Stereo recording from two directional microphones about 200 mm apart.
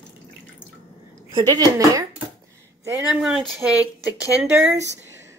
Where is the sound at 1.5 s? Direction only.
20° right (ahead or behind).